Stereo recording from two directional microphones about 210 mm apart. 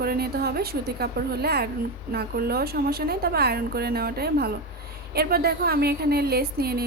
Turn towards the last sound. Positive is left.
turn(degrees=-45)  # may be behind; listen again after turning